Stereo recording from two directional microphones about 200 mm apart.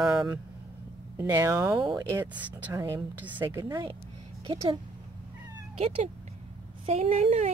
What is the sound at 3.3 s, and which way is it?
Speech, 20° right (ahead or behind).